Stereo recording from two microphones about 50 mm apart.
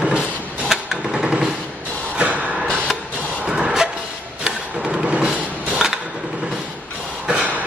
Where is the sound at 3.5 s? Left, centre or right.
Centre.